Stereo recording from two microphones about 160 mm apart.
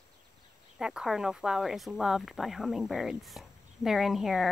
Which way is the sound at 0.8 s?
5° right (ahead or behind).